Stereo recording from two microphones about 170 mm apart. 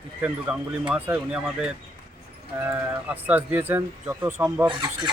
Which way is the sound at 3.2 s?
10° right (ahead or behind).